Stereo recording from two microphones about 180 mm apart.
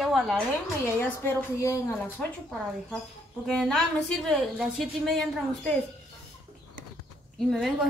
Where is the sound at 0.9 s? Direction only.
15° left (ahead or behind).